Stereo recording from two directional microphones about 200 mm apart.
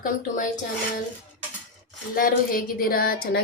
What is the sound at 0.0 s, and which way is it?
Music, 40° left (ahead or behind).